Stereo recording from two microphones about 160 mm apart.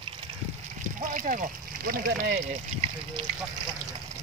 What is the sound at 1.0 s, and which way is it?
Speech, 55° right (ahead or behind).